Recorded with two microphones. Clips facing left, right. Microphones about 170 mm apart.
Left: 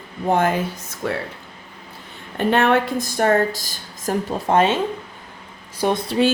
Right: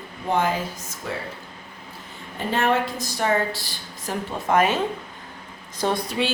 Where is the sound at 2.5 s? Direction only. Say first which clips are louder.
Left 5 dB; 65° left (ahead or behind); by 4.8 s 30° left (ahead or behind).